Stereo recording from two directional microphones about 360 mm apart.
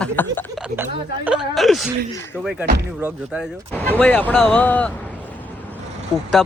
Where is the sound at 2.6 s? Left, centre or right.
Right.